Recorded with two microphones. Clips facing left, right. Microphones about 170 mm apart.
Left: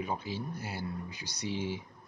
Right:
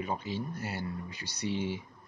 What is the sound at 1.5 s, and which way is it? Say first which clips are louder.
Speech: right 2 dB; 55° right (ahead or behind).